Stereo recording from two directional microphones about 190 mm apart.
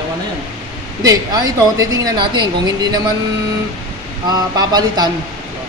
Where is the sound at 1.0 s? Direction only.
20° right (ahead or behind).